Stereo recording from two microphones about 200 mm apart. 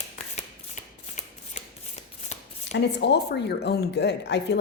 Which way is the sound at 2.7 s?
55° left (ahead or behind).